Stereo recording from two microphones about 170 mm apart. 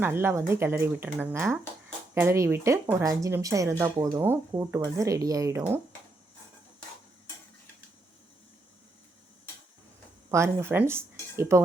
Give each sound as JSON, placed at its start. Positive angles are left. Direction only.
{"t": 0.0, "sound": "speech", "side_deg": -15}
{"t": 10.3, "sound": "speech", "side_deg": -15}